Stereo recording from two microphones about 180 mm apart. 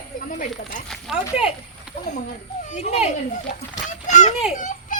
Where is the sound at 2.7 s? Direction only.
35° left (ahead or behind).